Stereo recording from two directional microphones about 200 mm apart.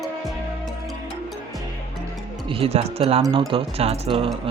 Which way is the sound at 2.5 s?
30° right (ahead or behind).